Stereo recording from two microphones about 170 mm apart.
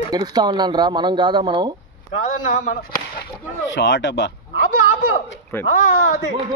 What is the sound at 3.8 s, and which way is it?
Speech, 90° left.